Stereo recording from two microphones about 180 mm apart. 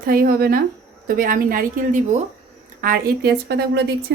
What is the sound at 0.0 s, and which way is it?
A woman's voice, 55° right (ahead or behind).